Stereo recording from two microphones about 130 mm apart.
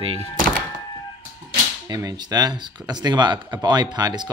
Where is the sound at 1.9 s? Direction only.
30° right (ahead or behind).